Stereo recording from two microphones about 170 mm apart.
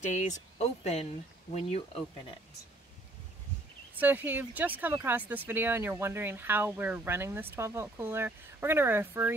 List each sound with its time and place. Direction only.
0.0 s speech: 45° left (ahead or behind)
4.0 s speech: 10° right (ahead or behind)